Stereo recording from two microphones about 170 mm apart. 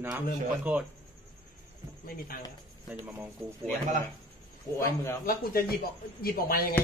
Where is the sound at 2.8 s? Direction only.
5° right (ahead or behind).